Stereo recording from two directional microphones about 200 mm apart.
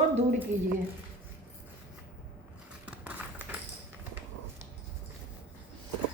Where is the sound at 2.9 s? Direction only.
5° right (ahead or behind).